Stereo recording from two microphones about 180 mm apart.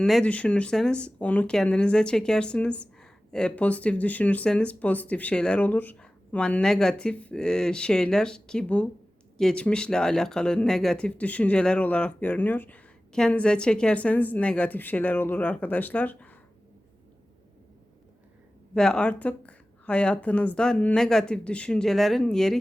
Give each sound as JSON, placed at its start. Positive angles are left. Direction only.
{"t": 0.0, "sound": "speech", "side_deg": 5}
{"t": 18.7, "sound": "speech", "side_deg": 5}